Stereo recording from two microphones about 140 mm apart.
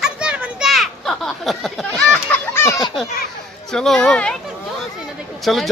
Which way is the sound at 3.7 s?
5° left (ahead or behind).